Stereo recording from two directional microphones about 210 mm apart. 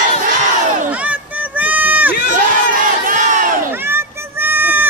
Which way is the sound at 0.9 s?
5° right (ahead or behind).